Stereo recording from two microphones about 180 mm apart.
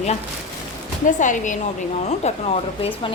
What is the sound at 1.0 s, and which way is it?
A woman's voice, 45° left (ahead or behind).